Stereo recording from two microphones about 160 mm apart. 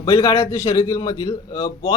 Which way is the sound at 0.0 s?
25° left (ahead or behind).